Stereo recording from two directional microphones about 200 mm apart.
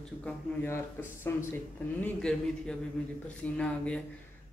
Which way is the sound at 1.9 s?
5° left (ahead or behind).